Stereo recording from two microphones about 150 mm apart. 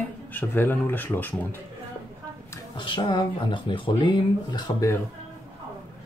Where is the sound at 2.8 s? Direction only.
30° left (ahead or behind).